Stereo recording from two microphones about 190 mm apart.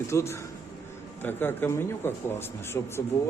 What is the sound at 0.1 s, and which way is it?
A man's voice, 15° left (ahead or behind).